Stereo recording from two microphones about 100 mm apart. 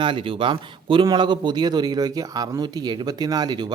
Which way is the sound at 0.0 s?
55° right (ahead or behind).